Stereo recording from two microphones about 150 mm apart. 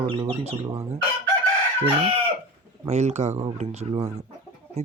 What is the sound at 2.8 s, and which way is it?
Speech, 50° right (ahead or behind).